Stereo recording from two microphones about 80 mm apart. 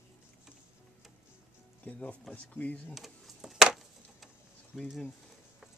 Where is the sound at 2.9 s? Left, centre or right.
Centre.